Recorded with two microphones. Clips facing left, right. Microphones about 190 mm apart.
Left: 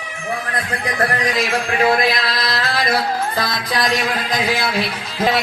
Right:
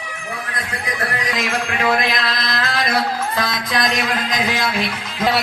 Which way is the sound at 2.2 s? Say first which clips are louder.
Left 1 dB; 35° left (ahead or behind).